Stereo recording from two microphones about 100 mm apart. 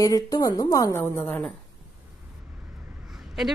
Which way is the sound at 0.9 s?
20° left (ahead or behind).